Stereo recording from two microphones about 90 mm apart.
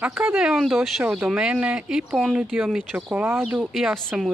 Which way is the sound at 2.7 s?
20° right (ahead or behind).